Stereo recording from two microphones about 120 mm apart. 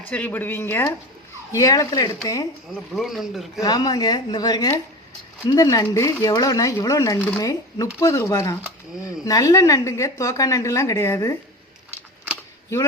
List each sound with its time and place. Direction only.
0.0 s speech: 15° left (ahead or behind)
1.5 s speech: 30° left (ahead or behind)
2.9 s speech: centre (ahead or behind)
3.6 s speech: 35° left (ahead or behind)